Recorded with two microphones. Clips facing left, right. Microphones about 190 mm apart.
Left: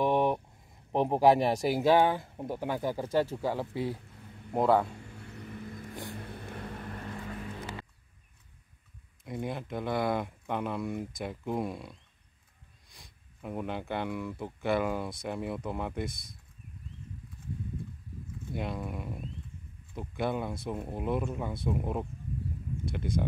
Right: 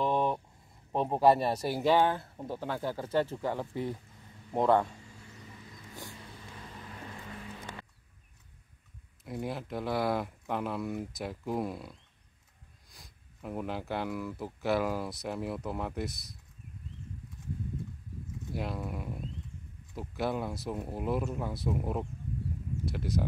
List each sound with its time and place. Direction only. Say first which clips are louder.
0.0 s a sound: left 3 dB; 15° left (ahead or behind)
0.9 s speech: left 2 dB; 15° left (ahead or behind)
4.9 s vehicle: left 6 dB; 60° left (ahead or behind)
9.2 s speech: left 1 dB; centre (ahead or behind)
18.5 s speech: left 1 dB; centre (ahead or behind)